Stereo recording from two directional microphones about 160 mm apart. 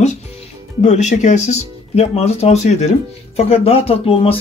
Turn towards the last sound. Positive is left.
turn(degrees=35)  # may be behind; listen again after turning